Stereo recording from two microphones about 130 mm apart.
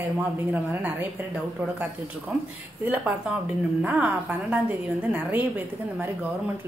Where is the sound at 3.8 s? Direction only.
10° right (ahead or behind).